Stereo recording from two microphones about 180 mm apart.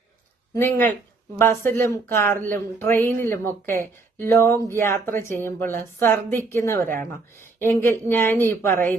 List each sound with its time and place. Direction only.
0.5 s speech: 10° left (ahead or behind)
6.8 s speech: 50° right (ahead or behind)
7.6 s speech: 10° left (ahead or behind)